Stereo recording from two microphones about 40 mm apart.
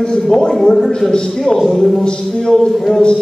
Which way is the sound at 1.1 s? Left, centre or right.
Centre.